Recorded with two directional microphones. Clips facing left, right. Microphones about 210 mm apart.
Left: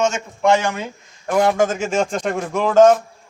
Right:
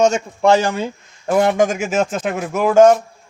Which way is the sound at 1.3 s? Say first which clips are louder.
Right 2 dB; 20° right (ahead or behind).